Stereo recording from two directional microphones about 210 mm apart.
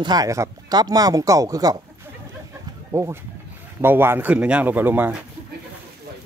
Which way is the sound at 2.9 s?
15° right (ahead or behind).